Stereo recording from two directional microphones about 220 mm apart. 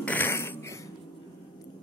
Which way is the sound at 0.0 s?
10° left (ahead or behind).